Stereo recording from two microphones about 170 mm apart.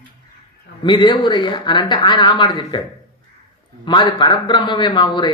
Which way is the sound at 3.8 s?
30° left (ahead or behind).